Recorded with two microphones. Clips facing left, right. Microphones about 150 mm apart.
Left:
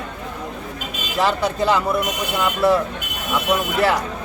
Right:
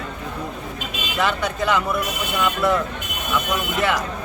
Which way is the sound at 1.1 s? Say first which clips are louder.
Left 3 dB; 30° left (ahead or behind).